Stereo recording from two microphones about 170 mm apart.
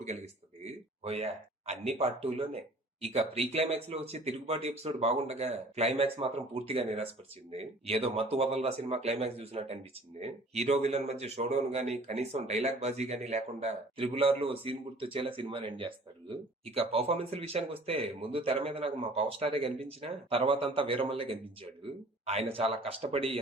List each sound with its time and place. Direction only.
0.6 s speech: 35° right (ahead or behind)